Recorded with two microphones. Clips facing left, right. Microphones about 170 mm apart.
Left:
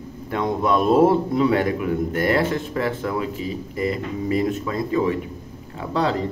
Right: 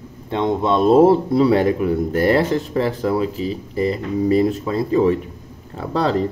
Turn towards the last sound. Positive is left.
turn(degrees=-35)  # may be behind; listen again after turning